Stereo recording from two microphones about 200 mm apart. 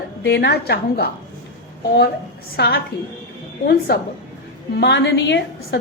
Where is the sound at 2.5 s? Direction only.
55° left (ahead or behind).